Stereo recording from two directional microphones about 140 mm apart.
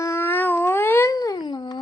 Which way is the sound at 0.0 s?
20° left (ahead or behind).